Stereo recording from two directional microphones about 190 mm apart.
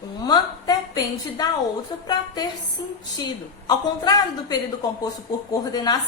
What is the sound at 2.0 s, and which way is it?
A woman's voice, 20° left (ahead or behind).